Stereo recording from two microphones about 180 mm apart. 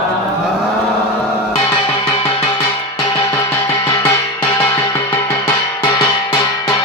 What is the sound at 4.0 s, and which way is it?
Music, 10° left (ahead or behind).